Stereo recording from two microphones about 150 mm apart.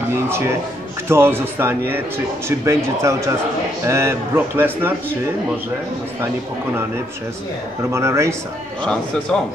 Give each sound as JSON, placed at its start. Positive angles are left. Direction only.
{"t": 0.1, "sound": "speech", "side_deg": -15}
{"t": 7.9, "sound": "a man's voice", "side_deg": -20}